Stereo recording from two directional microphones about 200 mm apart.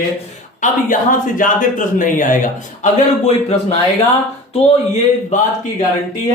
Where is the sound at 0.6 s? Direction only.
40° left (ahead or behind).